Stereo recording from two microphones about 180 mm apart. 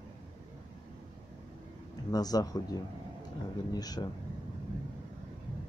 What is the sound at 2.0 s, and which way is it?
Speech, 20° left (ahead or behind).